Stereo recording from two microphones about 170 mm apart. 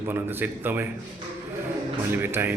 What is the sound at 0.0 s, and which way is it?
Speech, 10° right (ahead or behind).